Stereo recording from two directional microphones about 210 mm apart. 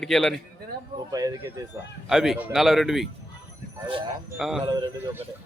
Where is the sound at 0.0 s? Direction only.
Centre (ahead or behind).